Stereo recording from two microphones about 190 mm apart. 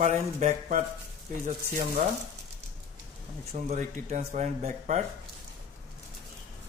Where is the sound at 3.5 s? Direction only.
40° right (ahead or behind).